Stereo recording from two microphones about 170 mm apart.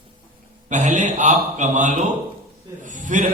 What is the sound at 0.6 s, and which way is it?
A man's voice, 45° right (ahead or behind).